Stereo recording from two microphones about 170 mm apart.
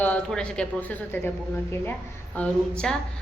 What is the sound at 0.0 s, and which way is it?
A woman's voice, 5° left (ahead or behind).